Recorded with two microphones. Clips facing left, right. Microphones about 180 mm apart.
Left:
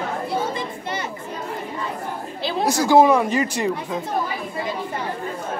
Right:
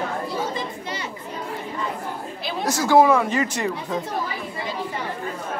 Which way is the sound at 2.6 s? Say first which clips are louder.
Left 1 dB; 15° left (ahead or behind).